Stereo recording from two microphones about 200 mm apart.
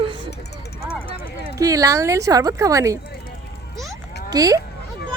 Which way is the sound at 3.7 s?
Centre (ahead or behind).